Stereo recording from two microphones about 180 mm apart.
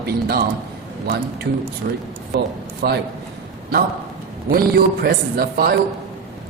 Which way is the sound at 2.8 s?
65° right (ahead or behind).